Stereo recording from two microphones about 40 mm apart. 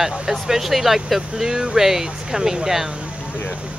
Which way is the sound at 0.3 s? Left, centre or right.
Centre.